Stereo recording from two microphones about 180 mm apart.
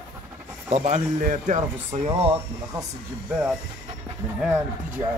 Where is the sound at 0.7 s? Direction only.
35° right (ahead or behind).